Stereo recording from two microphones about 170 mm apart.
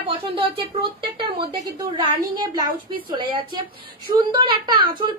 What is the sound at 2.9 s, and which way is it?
A woman's voice, 30° right (ahead or behind).